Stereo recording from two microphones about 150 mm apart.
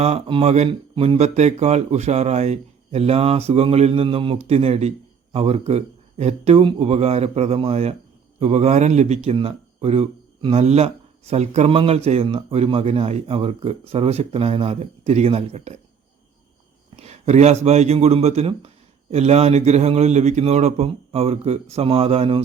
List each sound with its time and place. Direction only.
0.0 s speech: 40° right (ahead or behind)
17.0 s speech: 45° right (ahead or behind)